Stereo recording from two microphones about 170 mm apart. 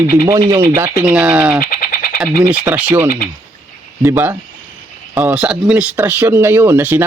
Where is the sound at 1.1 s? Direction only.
5° right (ahead or behind).